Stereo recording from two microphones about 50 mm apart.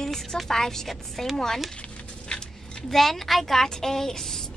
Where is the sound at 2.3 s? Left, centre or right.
Centre.